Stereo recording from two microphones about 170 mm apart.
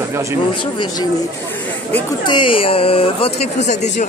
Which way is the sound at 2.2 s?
30° left (ahead or behind).